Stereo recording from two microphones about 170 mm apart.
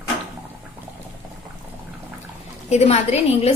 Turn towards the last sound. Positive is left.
turn(degrees=40)  # may be behind; listen again after turning